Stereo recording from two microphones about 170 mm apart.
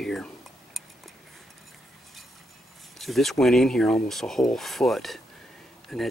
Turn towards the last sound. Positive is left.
turn(degrees=0)  # may be behind; listen again after turning